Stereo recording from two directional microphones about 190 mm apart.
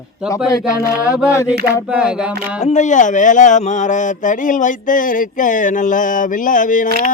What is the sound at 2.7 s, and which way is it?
Speech, 40° left (ahead or behind).